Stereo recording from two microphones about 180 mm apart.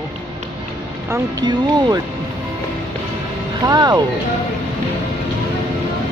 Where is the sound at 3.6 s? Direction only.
25° right (ahead or behind).